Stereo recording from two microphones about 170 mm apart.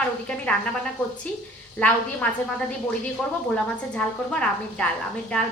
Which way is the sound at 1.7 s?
10° left (ahead or behind).